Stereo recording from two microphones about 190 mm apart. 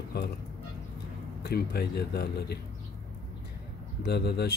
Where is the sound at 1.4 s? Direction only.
55° left (ahead or behind).